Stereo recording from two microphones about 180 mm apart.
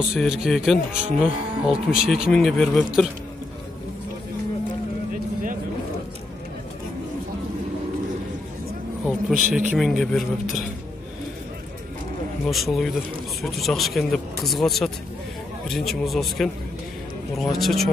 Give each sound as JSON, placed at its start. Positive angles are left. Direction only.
{"t": 0.1, "sound": "speech", "side_deg": 0}
{"t": 9.3, "sound": "speech", "side_deg": -5}
{"t": 12.4, "sound": "speech", "side_deg": 0}